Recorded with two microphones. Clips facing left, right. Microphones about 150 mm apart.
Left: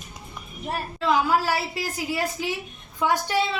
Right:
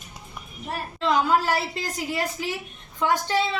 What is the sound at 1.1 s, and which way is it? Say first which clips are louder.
A woman's voice: even; 5° left (ahead or behind).